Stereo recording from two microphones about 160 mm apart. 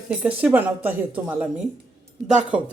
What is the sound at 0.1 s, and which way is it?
Speech, 10° right (ahead or behind).